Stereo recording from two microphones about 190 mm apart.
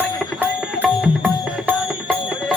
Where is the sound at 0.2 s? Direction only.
5° right (ahead or behind).